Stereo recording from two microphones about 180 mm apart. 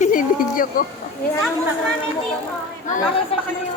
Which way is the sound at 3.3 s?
30° left (ahead or behind).